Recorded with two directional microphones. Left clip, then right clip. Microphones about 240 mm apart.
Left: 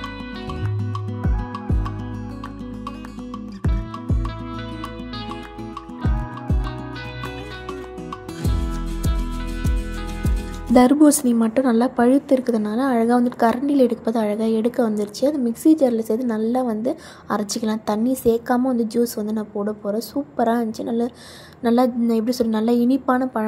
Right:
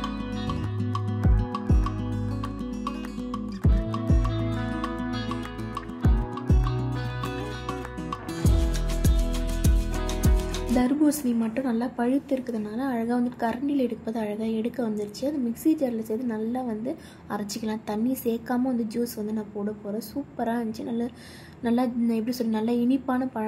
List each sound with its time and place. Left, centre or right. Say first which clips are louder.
1.2 s music: left 2 dB; centre
10.7 s speech: left 10 dB; left